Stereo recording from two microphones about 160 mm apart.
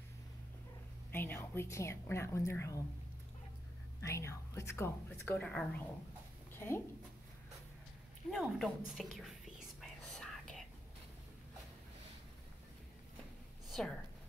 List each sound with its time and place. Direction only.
1.1 s a woman's voice: 15° left (ahead or behind)
4.0 s a woman's voice: 15° left (ahead or behind)
8.3 s a woman's voice: centre (ahead or behind)
9.8 s whispering: centre (ahead or behind)
13.7 s a sound: centre (ahead or behind)